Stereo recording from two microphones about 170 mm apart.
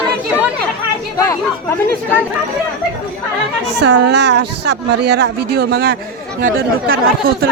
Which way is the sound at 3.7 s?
90° right.